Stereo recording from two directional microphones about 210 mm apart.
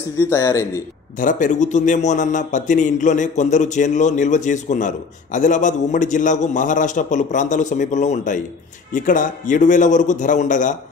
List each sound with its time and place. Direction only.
0.2 s speech: 15° left (ahead or behind)
1.2 s a man's voice: 35° left (ahead or behind)